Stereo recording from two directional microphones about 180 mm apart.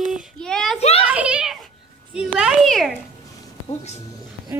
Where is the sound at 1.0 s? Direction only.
5° right (ahead or behind).